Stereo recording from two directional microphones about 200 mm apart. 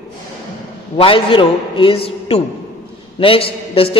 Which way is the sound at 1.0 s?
25° left (ahead or behind).